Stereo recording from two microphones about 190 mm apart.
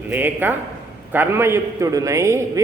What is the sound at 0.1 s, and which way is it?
A man's voice, 10° right (ahead or behind).